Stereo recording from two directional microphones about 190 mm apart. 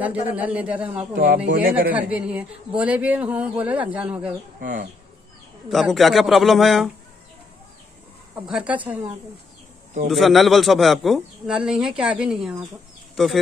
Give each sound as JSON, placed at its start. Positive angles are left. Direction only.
{"t": 0.3, "sound": "speech", "side_deg": -5}
{"t": 1.1, "sound": "speech", "side_deg": -50}
{"t": 1.9, "sound": "speech", "side_deg": -5}
{"t": 4.6, "sound": "speech", "side_deg": -45}
{"t": 5.7, "sound": "a man's voice", "side_deg": 0}
{"t": 8.4, "sound": "speech", "side_deg": -5}
{"t": 10.0, "sound": "a man's voice", "side_deg": 0}